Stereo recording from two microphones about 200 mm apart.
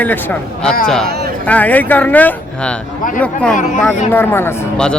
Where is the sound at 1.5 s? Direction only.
10° left (ahead or behind).